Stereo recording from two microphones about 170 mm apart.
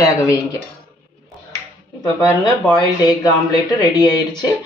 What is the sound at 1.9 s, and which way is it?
Speech, 25° left (ahead or behind).